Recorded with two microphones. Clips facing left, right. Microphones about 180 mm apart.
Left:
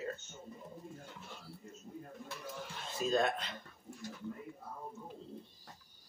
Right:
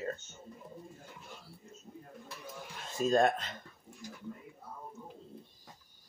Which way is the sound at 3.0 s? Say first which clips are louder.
Right 5 dB; 45° right (ahead or behind).